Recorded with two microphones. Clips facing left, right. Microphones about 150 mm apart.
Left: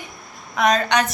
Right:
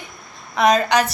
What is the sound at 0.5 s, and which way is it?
Speech, centre (ahead or behind).